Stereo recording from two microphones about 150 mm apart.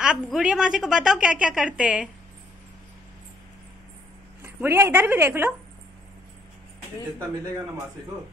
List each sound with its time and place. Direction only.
0.0 s a woman's voice: 5° right (ahead or behind)
4.4 s a woman's voice: 15° right (ahead or behind)